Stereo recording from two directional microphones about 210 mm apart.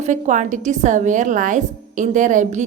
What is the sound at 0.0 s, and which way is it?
Speech, 35° right (ahead or behind).